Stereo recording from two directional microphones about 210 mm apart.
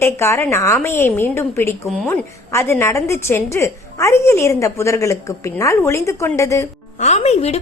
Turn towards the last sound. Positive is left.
turn(degrees=30)  # may be behind; listen again after turning